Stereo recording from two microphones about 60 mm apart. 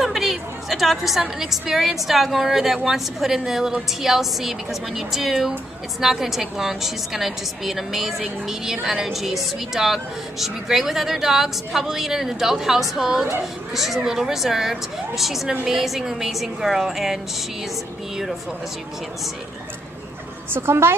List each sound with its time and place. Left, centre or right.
0.0 s a woman's voice: centre
20.5 s a woman's voice: right